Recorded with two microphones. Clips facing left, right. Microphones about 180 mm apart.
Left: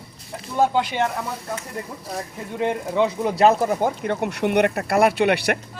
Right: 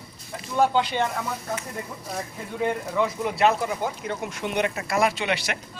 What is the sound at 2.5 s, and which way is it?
Speech, 25° left (ahead or behind).